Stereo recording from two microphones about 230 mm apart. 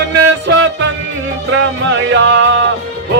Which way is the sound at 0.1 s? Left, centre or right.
Right.